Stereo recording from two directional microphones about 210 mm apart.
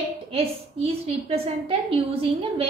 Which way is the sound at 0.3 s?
30° right (ahead or behind).